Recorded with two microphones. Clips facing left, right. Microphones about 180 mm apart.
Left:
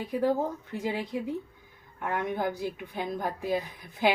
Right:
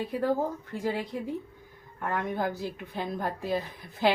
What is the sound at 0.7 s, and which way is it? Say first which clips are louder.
A woman's voice: even; 15° left (ahead or behind).